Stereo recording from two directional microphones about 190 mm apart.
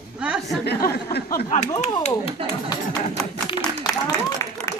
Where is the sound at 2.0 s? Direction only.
30° left (ahead or behind).